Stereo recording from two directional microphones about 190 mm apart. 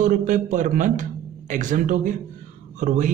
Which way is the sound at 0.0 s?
40° right (ahead or behind).